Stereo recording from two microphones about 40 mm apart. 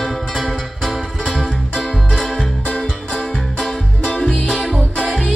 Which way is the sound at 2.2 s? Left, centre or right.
Left.